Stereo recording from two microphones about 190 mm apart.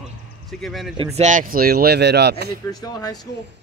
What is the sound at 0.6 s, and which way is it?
Speech, centre (ahead or behind).